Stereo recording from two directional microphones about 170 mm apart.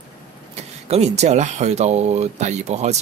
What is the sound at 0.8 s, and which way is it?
Speech, 40° right (ahead or behind).